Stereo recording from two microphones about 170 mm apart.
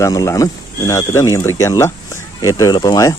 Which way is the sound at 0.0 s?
20° left (ahead or behind).